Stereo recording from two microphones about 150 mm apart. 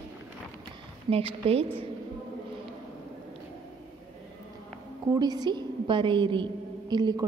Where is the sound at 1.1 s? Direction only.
40° right (ahead or behind).